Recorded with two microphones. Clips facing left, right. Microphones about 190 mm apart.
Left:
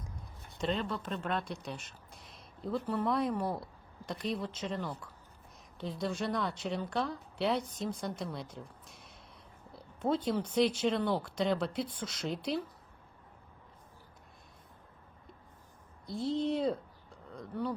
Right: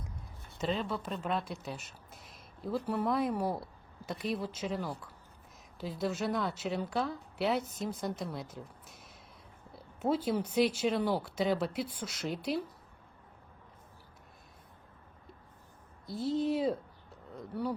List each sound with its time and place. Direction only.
0.6 s a woman's voice: 5° right (ahead or behind)
16.0 s a woman's voice: centre (ahead or behind)